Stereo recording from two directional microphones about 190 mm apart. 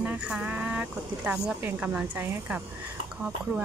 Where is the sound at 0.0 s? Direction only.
5° right (ahead or behind).